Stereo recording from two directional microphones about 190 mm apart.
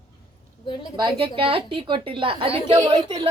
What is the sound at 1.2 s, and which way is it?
A woman's voice, 30° right (ahead or behind).